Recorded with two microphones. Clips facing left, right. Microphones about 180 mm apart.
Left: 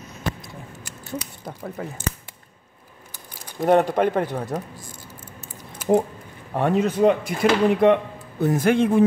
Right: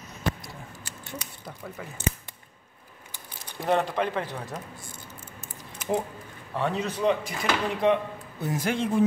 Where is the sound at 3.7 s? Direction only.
50° left (ahead or behind).